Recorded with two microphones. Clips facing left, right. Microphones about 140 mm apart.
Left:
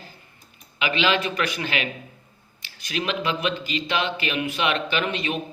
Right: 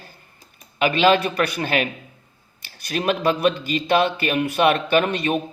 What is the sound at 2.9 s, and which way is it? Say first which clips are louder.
A man's voice: right 5 dB; 45° right (ahead or behind).